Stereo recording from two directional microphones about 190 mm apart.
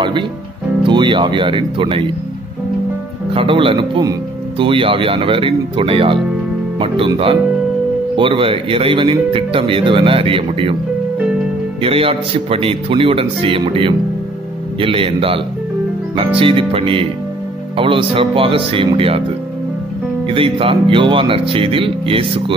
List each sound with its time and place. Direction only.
0.8 s speech: 25° right (ahead or behind)
3.3 s speech: 25° right (ahead or behind)
11.8 s speech: 30° right (ahead or behind)
20.2 s speech: 30° right (ahead or behind)